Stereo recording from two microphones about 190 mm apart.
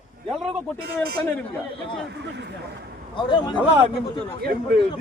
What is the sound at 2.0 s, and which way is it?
Speech, 65° right (ahead or behind).